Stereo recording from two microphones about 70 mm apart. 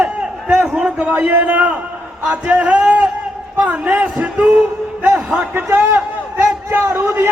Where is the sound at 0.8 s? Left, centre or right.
Centre.